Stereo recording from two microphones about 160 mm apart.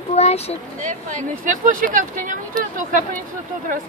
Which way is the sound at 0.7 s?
50° right (ahead or behind).